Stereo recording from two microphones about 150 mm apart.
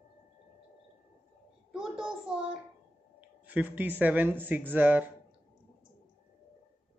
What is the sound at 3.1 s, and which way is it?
Speech, 10° right (ahead or behind).